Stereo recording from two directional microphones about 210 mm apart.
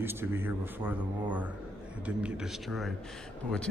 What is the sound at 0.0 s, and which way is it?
Speech, 10° right (ahead or behind).